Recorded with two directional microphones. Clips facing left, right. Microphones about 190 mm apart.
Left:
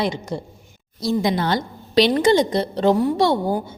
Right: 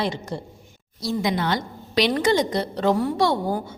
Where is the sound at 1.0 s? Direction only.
25° left (ahead or behind).